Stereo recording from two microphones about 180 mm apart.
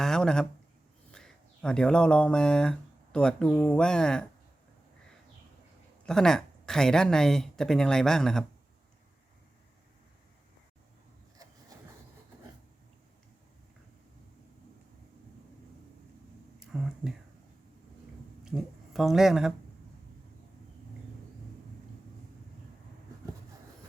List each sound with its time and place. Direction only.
0.0 s speech: 5° left (ahead or behind)
6.1 s speech: 5° left (ahead or behind)
16.7 s a sound: 5° right (ahead or behind)
18.4 s speech: centre (ahead or behind)